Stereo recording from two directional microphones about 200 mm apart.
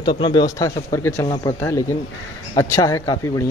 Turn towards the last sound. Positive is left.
turn(degrees=15)  # may be behind; listen again after turning